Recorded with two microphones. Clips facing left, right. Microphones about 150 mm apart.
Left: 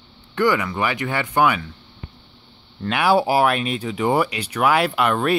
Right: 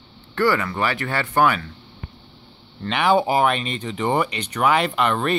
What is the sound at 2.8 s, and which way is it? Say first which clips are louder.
Speech: left 1 dB; 5° left (ahead or behind).